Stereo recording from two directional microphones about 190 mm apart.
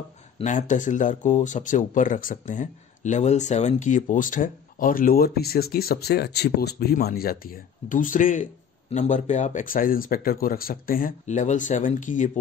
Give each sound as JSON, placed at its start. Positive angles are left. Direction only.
{"t": 0.4, "sound": "speech", "side_deg": 40}